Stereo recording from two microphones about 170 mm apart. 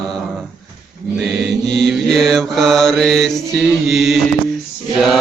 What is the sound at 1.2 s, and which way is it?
Mantra, 85° right.